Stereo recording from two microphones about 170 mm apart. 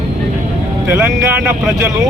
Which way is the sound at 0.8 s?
10° right (ahead or behind).